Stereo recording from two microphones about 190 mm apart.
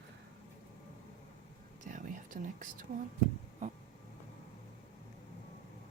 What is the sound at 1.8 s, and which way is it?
Whispering, 45° right (ahead or behind).